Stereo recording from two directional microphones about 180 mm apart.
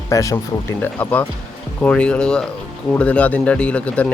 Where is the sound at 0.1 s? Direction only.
15° left (ahead or behind).